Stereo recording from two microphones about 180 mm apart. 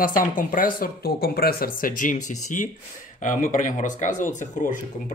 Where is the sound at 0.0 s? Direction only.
50° left (ahead or behind).